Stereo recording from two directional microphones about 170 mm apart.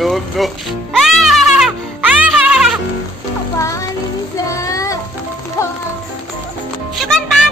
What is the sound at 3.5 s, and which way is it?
Music, 20° left (ahead or behind).